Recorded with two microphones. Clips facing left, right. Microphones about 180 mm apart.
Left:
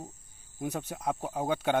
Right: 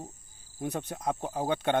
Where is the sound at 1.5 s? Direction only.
5° left (ahead or behind).